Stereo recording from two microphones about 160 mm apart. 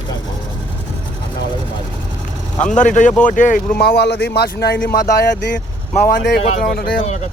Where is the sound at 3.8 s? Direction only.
90° left.